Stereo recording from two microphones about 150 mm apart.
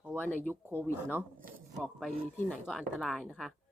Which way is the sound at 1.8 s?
5° right (ahead or behind).